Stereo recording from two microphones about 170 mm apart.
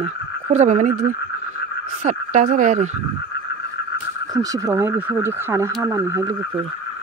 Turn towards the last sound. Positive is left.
turn(degrees=-20)  # may be behind; listen again after turning